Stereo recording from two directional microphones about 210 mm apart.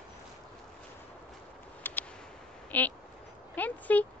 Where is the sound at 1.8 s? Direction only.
10° left (ahead or behind).